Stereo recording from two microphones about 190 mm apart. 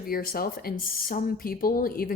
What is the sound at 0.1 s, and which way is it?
Speech, 50° left (ahead or behind).